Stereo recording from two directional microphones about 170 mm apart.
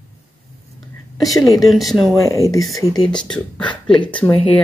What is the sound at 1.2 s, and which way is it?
Speech, 20° left (ahead or behind).